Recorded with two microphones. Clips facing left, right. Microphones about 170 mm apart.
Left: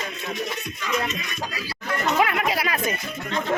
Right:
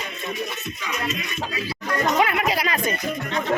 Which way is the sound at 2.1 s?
Centre (ahead or behind).